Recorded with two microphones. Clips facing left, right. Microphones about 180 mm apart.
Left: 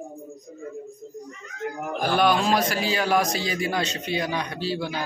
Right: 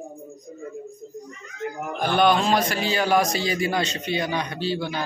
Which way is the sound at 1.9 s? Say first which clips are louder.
Right 2 dB; 5° left (ahead or behind).